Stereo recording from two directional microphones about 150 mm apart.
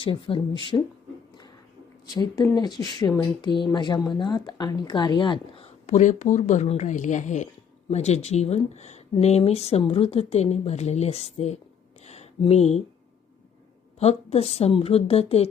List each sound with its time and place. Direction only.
0.0 s a woman's voice: 35° left (ahead or behind)
2.1 s speech: 25° left (ahead or behind)
5.8 s a woman's voice: 55° left (ahead or behind)
12.0 s a sound: 45° left (ahead or behind)
14.0 s a woman's voice: 45° left (ahead or behind)